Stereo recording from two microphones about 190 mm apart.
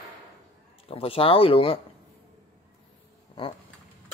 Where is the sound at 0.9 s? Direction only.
30° left (ahead or behind).